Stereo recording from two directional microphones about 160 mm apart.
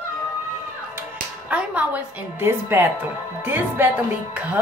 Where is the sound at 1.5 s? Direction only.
10° right (ahead or behind).